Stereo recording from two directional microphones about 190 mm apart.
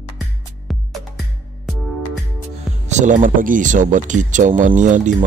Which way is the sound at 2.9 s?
40° right (ahead or behind).